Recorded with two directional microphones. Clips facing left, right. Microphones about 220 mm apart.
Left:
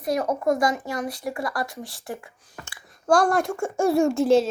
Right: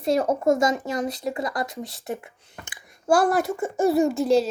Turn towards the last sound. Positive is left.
turn(degrees=0)  # may be behind; listen again after turning